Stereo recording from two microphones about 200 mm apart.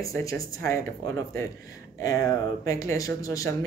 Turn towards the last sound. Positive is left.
turn(degrees=15)  # may be behind; listen again after turning